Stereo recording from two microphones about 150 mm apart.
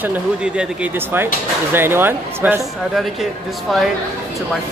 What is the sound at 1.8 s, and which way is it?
Speech, 15° right (ahead or behind).